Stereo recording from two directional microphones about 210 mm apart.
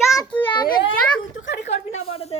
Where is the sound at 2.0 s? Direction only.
30° left (ahead or behind).